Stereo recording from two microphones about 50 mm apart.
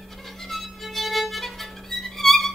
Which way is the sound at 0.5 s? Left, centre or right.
Centre.